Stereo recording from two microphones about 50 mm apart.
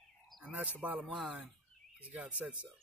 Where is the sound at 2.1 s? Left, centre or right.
Right.